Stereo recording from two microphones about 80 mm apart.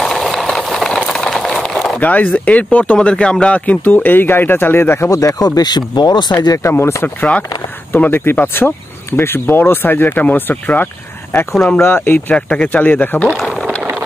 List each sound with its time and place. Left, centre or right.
0.0 s engine: centre
1.0 s a sound: centre
2.0 s speech: left
5.1 s speech: left
6.4 s speech: left
6.7 s speech: left
7.2 s speech: centre